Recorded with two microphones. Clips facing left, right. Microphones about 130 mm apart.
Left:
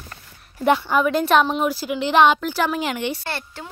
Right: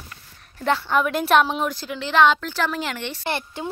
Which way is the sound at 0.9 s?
Centre (ahead or behind).